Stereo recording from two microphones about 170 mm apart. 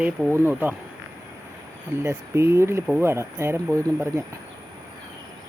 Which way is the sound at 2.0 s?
15° right (ahead or behind).